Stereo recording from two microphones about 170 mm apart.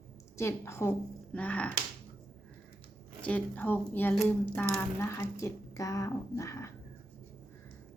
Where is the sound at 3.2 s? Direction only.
10° left (ahead or behind).